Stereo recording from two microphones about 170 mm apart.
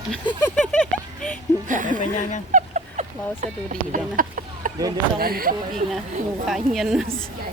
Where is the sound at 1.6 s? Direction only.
50° right (ahead or behind).